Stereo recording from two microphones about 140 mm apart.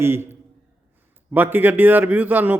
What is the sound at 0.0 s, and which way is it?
Speech, 15° right (ahead or behind).